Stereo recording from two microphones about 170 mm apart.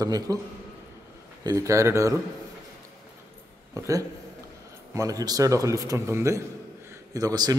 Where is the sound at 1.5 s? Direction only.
20° right (ahead or behind).